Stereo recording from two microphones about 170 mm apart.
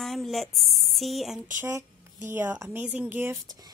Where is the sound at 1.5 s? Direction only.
10° right (ahead or behind).